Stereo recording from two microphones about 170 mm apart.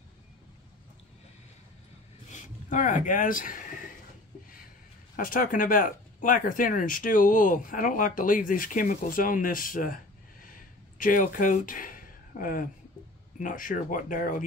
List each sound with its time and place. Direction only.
2.3 s speech: 50° left (ahead or behind)
5.1 s speech: 55° left (ahead or behind)
10.4 s a sound: 55° left (ahead or behind)
13.4 s speech: 50° left (ahead or behind)